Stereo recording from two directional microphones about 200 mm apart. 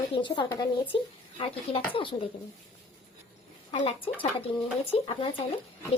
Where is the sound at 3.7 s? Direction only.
30° left (ahead or behind).